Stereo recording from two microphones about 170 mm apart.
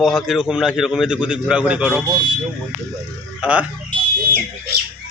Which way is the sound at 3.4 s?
5° right (ahead or behind).